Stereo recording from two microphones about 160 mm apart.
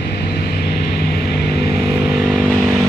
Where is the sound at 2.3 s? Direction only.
5° left (ahead or behind).